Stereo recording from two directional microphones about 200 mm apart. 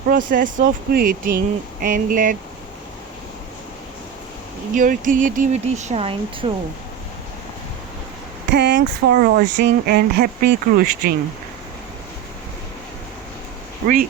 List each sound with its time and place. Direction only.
0.1 s speech: 45° right (ahead or behind)
4.7 s speech: 40° right (ahead or behind)
8.4 s speech: 55° right (ahead or behind)